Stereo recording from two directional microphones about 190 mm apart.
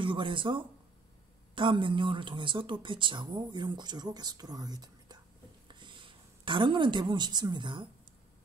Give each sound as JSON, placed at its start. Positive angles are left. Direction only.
{"t": 0.0, "sound": "a woman's voice", "side_deg": -25}